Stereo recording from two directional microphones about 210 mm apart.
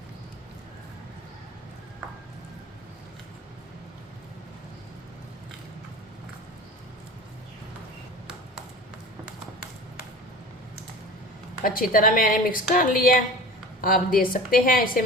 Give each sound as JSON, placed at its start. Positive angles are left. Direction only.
{"t": 11.6, "sound": "a woman's voice", "side_deg": 40}